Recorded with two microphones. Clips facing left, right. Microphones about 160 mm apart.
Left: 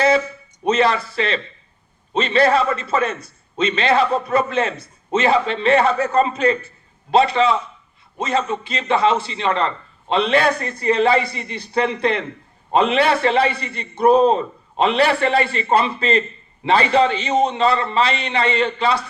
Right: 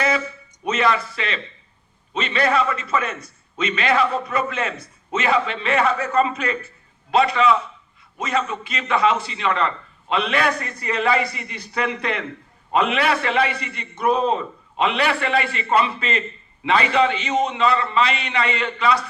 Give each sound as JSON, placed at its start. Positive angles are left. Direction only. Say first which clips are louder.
{"t": 0.6, "sound": "a man's voice", "louder": "left 3 dB", "side_deg": 30}